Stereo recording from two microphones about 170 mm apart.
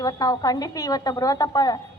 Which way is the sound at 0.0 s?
20° left (ahead or behind).